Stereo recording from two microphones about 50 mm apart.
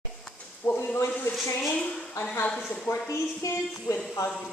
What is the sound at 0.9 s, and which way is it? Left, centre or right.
Speech, left.